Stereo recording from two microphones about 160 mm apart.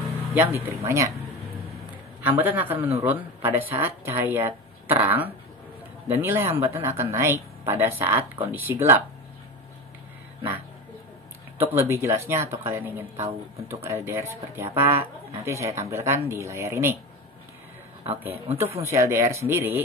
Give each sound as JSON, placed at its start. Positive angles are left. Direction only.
{"t": 0.3, "sound": "speech", "side_deg": -15}
{"t": 2.2, "sound": "speech", "side_deg": -10}
{"t": 11.5, "sound": "speech", "side_deg": -15}
{"t": 18.2, "sound": "speech", "side_deg": -15}